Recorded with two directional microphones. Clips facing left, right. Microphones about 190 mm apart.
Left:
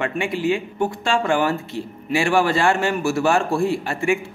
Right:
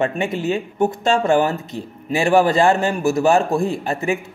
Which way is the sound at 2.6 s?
40° right (ahead or behind).